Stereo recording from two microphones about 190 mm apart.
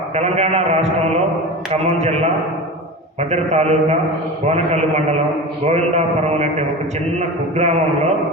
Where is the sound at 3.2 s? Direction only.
35° right (ahead or behind).